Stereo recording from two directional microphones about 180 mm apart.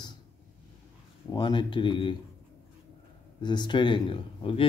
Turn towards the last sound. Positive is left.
turn(degrees=30)  # may be behind; listen again after turning